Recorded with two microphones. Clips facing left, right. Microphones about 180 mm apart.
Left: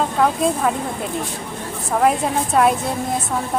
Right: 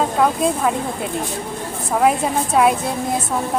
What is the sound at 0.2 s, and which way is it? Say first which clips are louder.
Speech: left 1 dB; centre (ahead or behind).